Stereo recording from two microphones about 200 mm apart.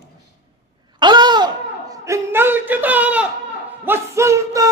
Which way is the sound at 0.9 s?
20° right (ahead or behind).